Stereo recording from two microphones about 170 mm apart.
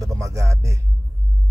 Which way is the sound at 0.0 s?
20° right (ahead or behind).